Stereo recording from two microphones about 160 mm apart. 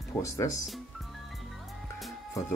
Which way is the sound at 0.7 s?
Centre (ahead or behind).